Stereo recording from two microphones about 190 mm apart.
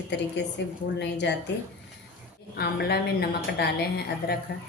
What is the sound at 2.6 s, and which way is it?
A woman's voice, 55° left (ahead or behind).